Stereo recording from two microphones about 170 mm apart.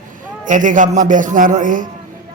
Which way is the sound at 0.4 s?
50° right (ahead or behind).